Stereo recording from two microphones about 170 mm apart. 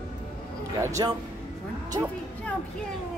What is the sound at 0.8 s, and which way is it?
Speech, 20° right (ahead or behind).